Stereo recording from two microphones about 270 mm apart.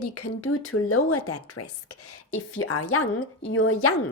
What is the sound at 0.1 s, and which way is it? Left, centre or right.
A woman's voice, left.